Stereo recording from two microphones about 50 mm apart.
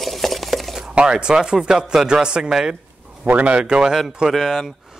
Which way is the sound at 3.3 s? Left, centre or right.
Right.